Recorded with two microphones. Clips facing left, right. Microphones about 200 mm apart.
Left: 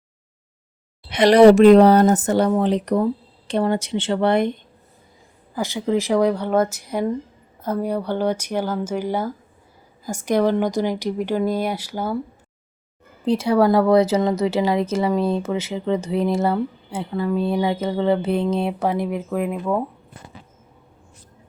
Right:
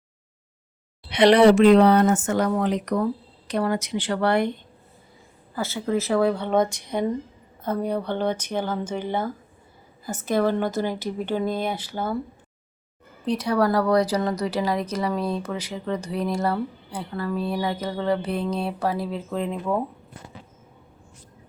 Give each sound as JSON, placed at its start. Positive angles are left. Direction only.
{"t": 1.1, "sound": "a woman's voice", "side_deg": 45}
{"t": 13.2, "sound": "speech", "side_deg": 25}